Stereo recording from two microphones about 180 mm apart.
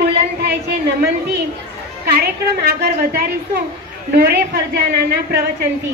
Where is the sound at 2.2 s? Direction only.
60° right (ahead or behind).